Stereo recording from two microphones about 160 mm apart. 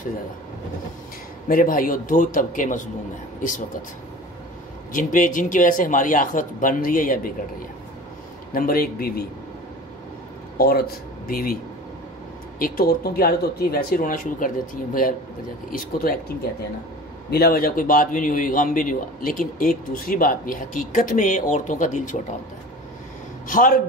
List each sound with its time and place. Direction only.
1.5 s a man's voice: 60° left (ahead or behind)
4.9 s a man's voice: 55° left (ahead or behind)
8.5 s speech: 65° left (ahead or behind)
10.6 s speech: 75° left (ahead or behind)
12.5 s speech: 65° left (ahead or behind)
15.8 s a man's voice: 65° left (ahead or behind); by 22.2 s 50° left (ahead or behind)
23.4 s speech: 55° left (ahead or behind)